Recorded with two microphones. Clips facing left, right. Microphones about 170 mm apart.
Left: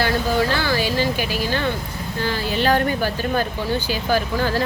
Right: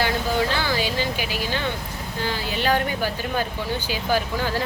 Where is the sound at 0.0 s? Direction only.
15° right (ahead or behind).